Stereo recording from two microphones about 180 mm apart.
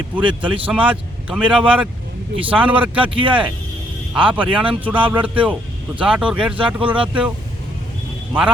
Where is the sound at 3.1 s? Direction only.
30° right (ahead or behind).